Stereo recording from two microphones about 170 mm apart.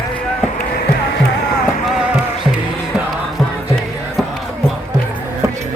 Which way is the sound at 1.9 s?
5° right (ahead or behind).